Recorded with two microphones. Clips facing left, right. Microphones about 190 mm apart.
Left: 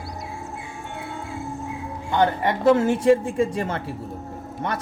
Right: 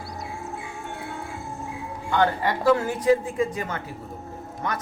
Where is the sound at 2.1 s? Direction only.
20° left (ahead or behind).